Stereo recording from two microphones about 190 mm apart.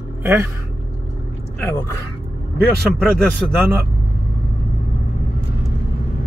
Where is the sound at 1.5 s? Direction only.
15° left (ahead or behind).